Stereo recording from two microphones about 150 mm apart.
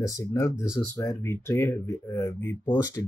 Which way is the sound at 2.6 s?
30° left (ahead or behind).